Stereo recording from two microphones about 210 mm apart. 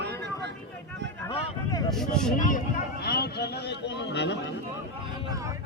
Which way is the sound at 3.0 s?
50° left (ahead or behind).